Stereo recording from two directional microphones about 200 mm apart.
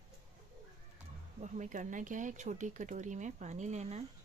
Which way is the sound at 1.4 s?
40° right (ahead or behind).